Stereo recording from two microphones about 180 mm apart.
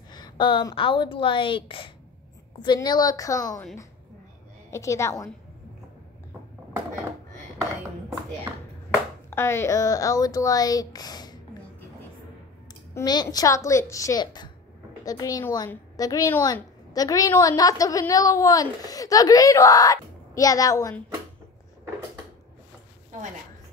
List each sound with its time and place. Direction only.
0.1 s a woman's voice: 25° left (ahead or behind)
4.6 s a woman's voice: 15° left (ahead or behind)
9.3 s a woman's voice: 15° left (ahead or behind)
12.9 s a woman's voice: 20° left (ahead or behind)